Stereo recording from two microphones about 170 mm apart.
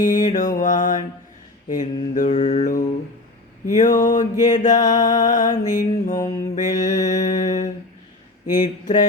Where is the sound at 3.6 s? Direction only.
45° left (ahead or behind).